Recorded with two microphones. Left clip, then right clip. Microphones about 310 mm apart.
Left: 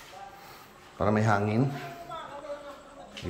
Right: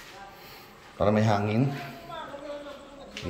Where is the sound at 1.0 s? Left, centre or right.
Centre.